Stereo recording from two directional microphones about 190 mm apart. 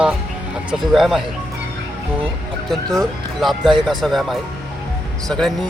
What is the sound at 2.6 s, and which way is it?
Speech, centre (ahead or behind).